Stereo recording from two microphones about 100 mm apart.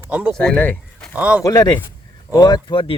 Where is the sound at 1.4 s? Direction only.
35° left (ahead or behind).